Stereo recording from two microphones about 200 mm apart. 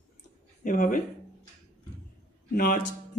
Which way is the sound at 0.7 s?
40° left (ahead or behind).